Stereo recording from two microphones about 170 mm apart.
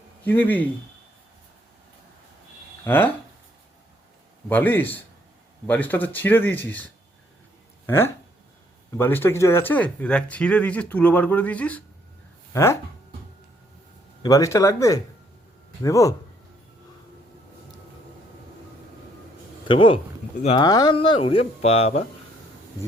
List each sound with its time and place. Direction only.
0.3 s speech: 10° left (ahead or behind)
2.8 s speech: 10° left (ahead or behind)
4.4 s speech: 10° left (ahead or behind)
14.2 s speech: 20° left (ahead or behind)
19.6 s speech: 30° left (ahead or behind)